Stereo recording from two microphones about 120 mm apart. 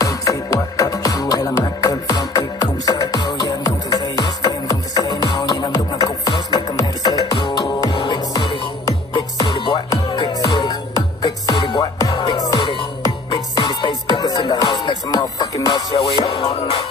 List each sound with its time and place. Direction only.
0.0 s music: 30° left (ahead or behind); by 16.8 s 45° left (ahead or behind)